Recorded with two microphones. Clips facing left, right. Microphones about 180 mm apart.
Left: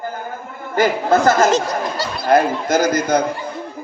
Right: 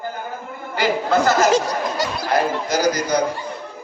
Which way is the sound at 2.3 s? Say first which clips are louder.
Left 6 dB; 50° left (ahead or behind).